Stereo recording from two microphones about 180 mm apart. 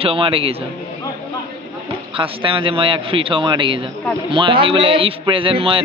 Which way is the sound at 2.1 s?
30° right (ahead or behind).